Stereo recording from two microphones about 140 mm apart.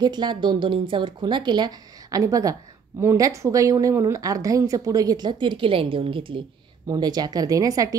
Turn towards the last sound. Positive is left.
turn(degrees=-25)  # may be behind; listen again after turning